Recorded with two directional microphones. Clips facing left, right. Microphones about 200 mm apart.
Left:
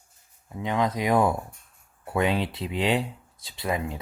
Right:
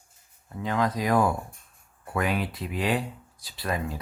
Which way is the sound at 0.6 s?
20° left (ahead or behind).